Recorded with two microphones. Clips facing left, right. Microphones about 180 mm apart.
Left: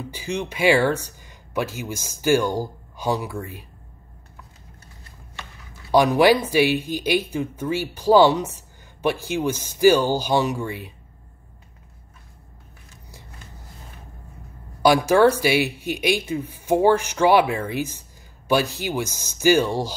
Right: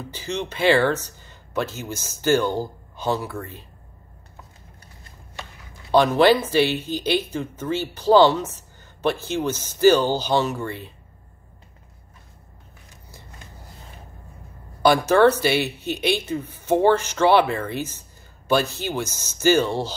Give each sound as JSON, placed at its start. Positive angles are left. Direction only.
{"t": 0.0, "sound": "speech", "side_deg": 10}
{"t": 5.9, "sound": "speech", "side_deg": 10}
{"t": 14.8, "sound": "speech", "side_deg": 10}